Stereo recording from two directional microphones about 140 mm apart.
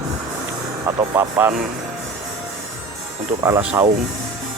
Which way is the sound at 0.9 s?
25° right (ahead or behind).